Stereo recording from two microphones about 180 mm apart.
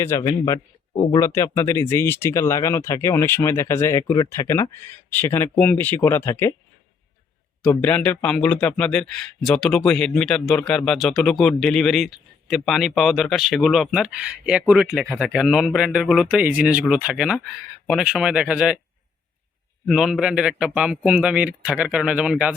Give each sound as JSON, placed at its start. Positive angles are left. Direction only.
{"t": 0.0, "sound": "a man's voice", "side_deg": 15}
{"t": 7.6, "sound": "a man's voice", "side_deg": 10}
{"t": 19.9, "sound": "a man's voice", "side_deg": 0}